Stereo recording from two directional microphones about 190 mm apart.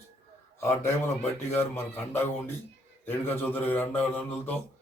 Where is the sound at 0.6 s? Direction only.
15° left (ahead or behind).